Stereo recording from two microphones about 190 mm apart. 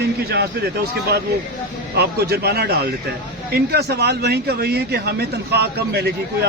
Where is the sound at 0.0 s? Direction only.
60° right (ahead or behind).